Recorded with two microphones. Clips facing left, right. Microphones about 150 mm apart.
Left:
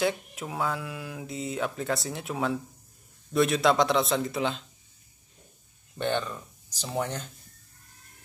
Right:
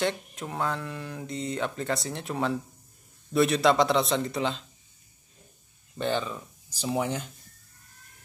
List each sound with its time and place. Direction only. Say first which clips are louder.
0.0 s speech: left 1 dB; 5° left (ahead or behind)
5.9 s speech: even; centre (ahead or behind)